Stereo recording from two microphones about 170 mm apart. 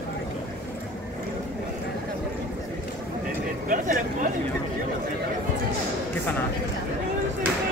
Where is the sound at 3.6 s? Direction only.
50° right (ahead or behind).